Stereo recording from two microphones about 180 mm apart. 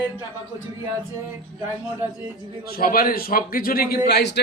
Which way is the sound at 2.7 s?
55° left (ahead or behind).